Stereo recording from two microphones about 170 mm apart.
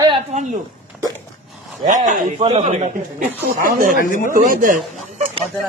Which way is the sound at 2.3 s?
40° right (ahead or behind).